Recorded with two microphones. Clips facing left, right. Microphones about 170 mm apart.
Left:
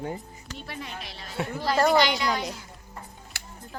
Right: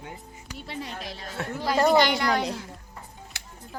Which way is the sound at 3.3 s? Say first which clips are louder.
Left 1 dB; 20° right (ahead or behind).